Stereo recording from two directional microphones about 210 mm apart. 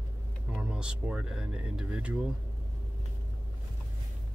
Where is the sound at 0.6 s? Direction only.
5° right (ahead or behind).